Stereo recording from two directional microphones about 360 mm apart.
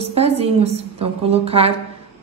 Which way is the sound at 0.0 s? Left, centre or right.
Centre.